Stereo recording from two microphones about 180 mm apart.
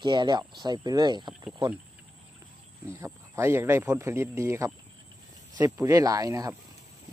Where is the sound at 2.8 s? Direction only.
15° right (ahead or behind).